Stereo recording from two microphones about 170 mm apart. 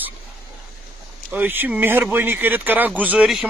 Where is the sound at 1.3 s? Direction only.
10° right (ahead or behind).